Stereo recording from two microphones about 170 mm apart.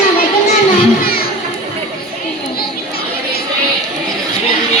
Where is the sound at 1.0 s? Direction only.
65° left (ahead or behind).